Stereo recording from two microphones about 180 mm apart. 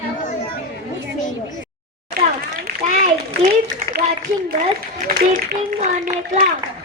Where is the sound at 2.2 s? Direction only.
55° right (ahead or behind).